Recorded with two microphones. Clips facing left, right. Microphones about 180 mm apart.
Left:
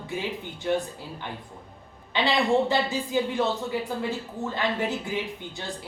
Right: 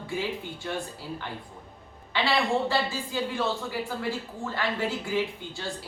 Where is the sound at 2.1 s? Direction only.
20° left (ahead or behind).